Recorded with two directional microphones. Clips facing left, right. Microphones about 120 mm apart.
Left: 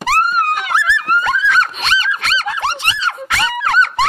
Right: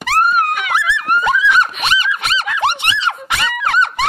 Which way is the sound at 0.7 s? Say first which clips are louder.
Even; 15° right (ahead or behind).